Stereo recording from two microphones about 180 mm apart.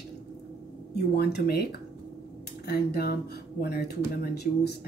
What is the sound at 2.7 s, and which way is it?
Speech, 60° left (ahead or behind).